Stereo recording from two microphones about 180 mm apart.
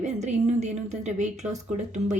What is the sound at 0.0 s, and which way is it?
A woman's voice, 40° right (ahead or behind).